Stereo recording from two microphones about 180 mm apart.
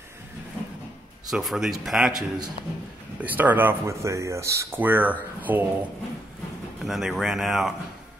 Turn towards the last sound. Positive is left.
turn(degrees=0)  # may be behind; listen again after turning